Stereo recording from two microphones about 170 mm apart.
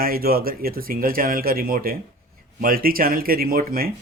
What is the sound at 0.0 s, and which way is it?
Speech, 60° right (ahead or behind).